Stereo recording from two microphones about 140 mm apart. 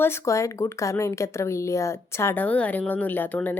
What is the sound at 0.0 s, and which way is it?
Speech, 20° left (ahead or behind).